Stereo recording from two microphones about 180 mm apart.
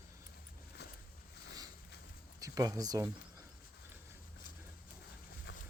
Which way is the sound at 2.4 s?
20° right (ahead or behind).